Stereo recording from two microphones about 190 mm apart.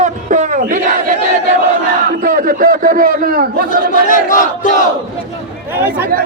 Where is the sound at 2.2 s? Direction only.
45° right (ahead or behind).